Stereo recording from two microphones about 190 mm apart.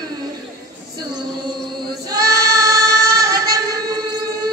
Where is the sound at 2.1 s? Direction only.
20° right (ahead or behind).